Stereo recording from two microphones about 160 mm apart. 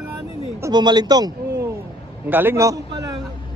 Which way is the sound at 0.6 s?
25° right (ahead or behind).